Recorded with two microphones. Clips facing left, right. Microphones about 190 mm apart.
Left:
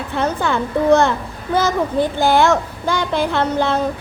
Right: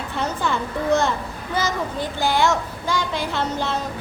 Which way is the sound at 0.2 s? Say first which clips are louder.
Left 5 dB; 60° left (ahead or behind).